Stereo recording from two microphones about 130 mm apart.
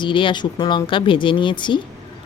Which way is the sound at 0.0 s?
40° left (ahead or behind).